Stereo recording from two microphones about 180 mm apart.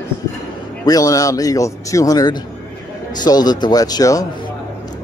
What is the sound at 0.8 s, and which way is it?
Speech, 20° left (ahead or behind).